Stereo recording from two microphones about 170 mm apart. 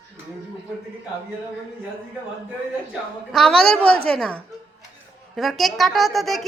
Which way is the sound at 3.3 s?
5° left (ahead or behind).